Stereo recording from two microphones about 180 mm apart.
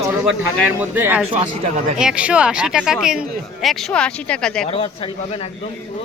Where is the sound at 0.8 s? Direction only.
10° right (ahead or behind).